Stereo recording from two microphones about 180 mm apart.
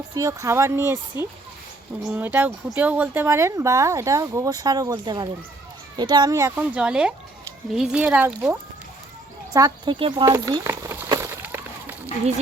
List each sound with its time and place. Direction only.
0.1 s speech: 20° right (ahead or behind)
9.5 s speech: 20° right (ahead or behind)
10.3 s a sound: 15° right (ahead or behind)